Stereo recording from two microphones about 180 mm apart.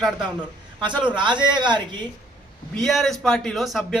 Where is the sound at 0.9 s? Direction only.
25° right (ahead or behind).